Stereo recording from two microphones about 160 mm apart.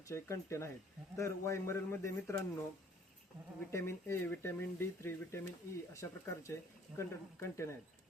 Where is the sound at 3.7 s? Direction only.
15° left (ahead or behind).